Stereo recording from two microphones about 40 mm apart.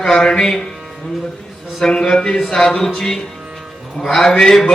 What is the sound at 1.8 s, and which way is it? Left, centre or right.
Speech, centre.